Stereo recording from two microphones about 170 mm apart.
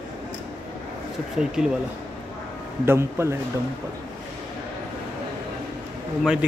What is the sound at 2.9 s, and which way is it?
Speech, 15° right (ahead or behind).